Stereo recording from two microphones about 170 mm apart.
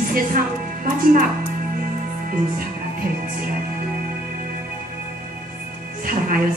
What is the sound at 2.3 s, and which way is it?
Music, 55° right (ahead or behind).